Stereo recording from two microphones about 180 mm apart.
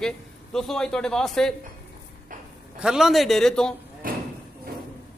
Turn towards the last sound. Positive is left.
turn(degrees=-50)  # may be behind; listen again after turning